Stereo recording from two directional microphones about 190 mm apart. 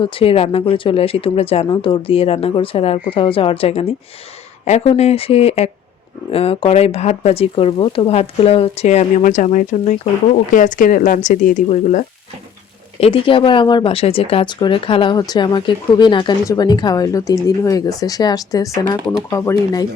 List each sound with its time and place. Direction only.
0.0 s speech: 30° left (ahead or behind)
13.0 s speech: 30° left (ahead or behind)